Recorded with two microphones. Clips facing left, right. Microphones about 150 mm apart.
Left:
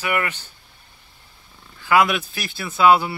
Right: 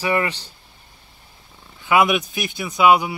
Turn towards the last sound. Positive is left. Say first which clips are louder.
# even
turn(degrees=-15)  # may be behind; listen again after turning